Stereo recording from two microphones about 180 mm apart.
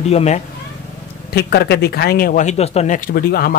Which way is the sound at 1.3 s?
65° left (ahead or behind).